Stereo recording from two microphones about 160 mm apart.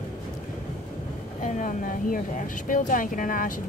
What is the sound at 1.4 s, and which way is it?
Speech, 55° left (ahead or behind).